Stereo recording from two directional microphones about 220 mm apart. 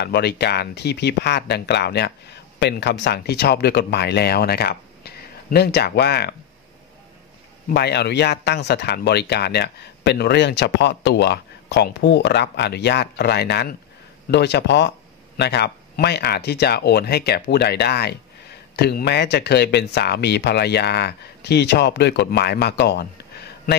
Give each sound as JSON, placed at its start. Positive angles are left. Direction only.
{"t": 0.0, "sound": "speech", "side_deg": 45}
{"t": 7.7, "sound": "speech", "side_deg": 50}